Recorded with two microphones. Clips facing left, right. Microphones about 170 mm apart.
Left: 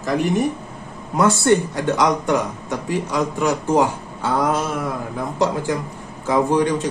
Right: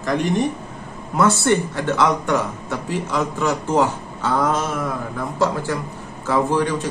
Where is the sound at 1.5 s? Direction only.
15° left (ahead or behind).